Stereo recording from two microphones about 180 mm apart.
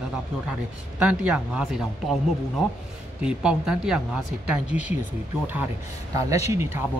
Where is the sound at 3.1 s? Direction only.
5° right (ahead or behind).